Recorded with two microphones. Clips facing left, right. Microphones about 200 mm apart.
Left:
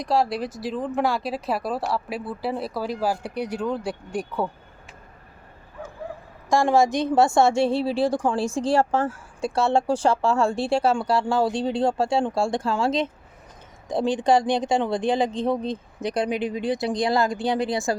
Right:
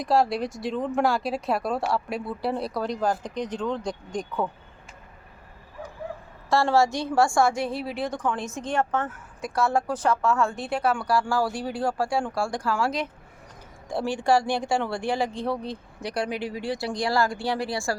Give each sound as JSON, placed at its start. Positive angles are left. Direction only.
{"t": 0.0, "sound": "speech", "side_deg": 0}
{"t": 6.5, "sound": "a woman's voice", "side_deg": 15}